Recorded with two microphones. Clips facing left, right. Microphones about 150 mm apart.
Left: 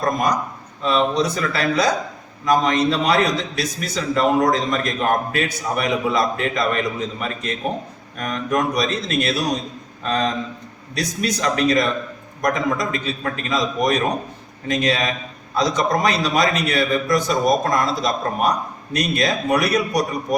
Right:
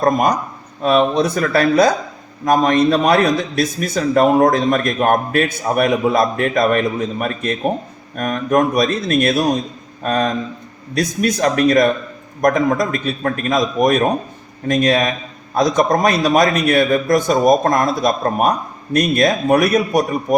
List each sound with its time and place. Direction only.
0.0 s a man's voice: 55° right (ahead or behind)